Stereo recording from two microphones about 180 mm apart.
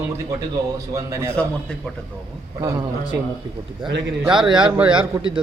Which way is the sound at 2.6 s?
20° right (ahead or behind).